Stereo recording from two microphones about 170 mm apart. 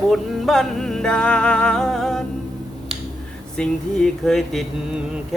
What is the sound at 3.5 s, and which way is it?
Male singing, 5° left (ahead or behind).